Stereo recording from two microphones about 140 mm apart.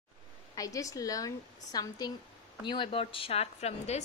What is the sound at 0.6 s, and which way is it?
A woman's voice, 25° left (ahead or behind).